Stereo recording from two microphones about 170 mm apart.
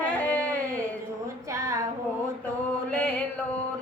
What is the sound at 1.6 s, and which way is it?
Female singing, 20° right (ahead or behind).